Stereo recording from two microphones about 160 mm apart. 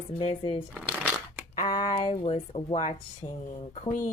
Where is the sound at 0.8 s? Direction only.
10° right (ahead or behind).